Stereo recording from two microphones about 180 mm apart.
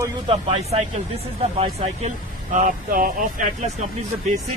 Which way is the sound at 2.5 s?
45° right (ahead or behind).